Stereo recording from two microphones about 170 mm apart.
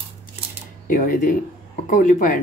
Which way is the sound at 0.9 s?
50° left (ahead or behind).